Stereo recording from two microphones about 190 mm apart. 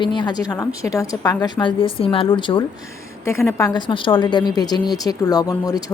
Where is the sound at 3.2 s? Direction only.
15° left (ahead or behind).